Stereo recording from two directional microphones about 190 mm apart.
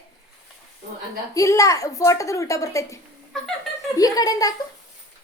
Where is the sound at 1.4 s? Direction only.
15° left (ahead or behind).